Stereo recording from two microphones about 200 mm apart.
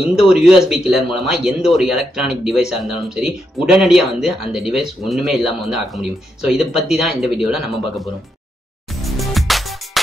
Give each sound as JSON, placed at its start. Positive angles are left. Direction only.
{"t": 0.1, "sound": "speech", "side_deg": -5}
{"t": 9.0, "sound": "music", "side_deg": 0}